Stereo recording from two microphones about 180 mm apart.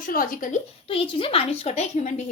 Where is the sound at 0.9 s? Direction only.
30° left (ahead or behind).